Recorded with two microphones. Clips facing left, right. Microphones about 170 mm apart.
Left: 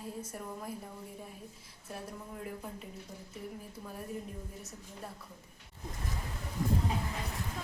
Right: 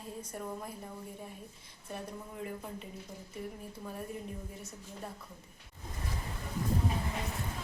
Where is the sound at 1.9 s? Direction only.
Centre (ahead or behind).